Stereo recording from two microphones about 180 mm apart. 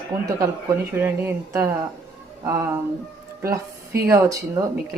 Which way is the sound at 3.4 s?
15° right (ahead or behind).